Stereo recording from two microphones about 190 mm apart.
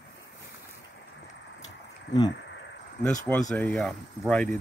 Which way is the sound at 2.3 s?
70° left (ahead or behind).